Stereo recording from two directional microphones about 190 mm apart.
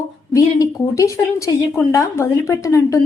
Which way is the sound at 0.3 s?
15° left (ahead or behind).